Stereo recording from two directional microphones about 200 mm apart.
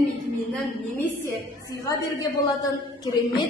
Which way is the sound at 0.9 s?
10° left (ahead or behind).